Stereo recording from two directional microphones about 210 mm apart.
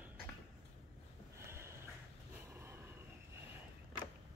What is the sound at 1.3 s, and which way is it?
Snort, 10° right (ahead or behind).